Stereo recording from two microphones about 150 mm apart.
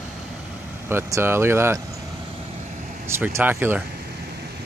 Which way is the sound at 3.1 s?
15° right (ahead or behind).